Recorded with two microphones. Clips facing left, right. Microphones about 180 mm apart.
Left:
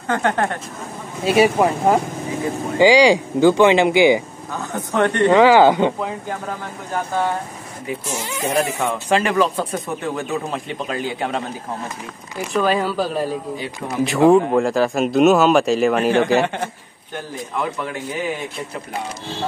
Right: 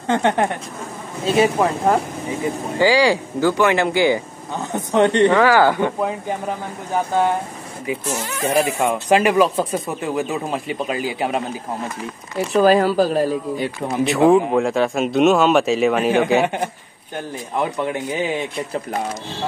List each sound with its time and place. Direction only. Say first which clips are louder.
0.0 s a woman's voice: right 2 dB; 20° right (ahead or behind)
1.4 s speech: left 2 dB; 10° left (ahead or behind)
4.7 s a woman's voice: right 3 dB; 20° right (ahead or behind)
5.3 s speech: left 3 dB; 20° left (ahead or behind)
8.1 s speech: right 1 dB; 10° left (ahead or behind)
8.5 s speech: right 2 dB; 10° right (ahead or behind)
12.5 s speech: right 5 dB; 40° right (ahead or behind)
14.0 s speech: left 1 dB; centre (ahead or behind)
16.4 s speech: right 2 dB; 10° right (ahead or behind)
17.6 s a woman's voice: right 3 dB; 25° right (ahead or behind)